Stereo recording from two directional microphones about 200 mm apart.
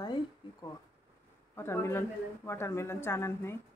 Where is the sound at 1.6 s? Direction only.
10° left (ahead or behind).